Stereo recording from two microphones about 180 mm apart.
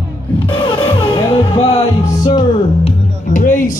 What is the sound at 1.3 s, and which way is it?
Music, 30° left (ahead or behind).